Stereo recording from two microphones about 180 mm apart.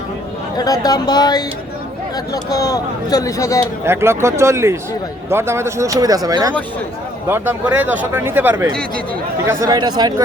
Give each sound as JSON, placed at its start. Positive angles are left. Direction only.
{"t": 0.5, "sound": "speech", "side_deg": 20}
{"t": 3.8, "sound": "speech", "side_deg": -15}